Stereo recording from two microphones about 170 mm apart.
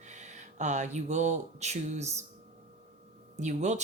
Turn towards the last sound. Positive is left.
turn(degrees=-45)  # may be behind; listen again after turning